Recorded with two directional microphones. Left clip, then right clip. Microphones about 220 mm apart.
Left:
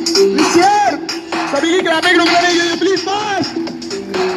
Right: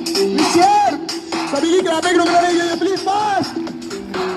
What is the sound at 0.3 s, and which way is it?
Music, 55° right (ahead or behind).